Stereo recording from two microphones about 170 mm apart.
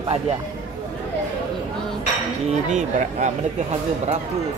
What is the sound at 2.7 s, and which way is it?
Speech, 45° right (ahead or behind).